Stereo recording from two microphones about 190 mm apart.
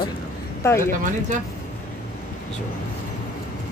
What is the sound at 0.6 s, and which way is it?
Speech, 15° left (ahead or behind).